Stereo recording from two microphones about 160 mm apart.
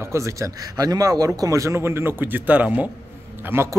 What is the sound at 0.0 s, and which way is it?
A man's voice, 20° right (ahead or behind).